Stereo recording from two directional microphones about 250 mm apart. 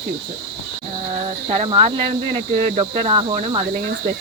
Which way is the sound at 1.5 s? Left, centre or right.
Right.